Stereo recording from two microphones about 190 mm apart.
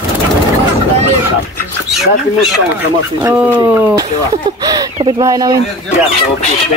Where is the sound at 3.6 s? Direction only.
15° right (ahead or behind).